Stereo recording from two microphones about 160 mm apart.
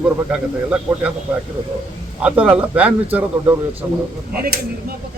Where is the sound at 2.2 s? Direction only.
10° right (ahead or behind).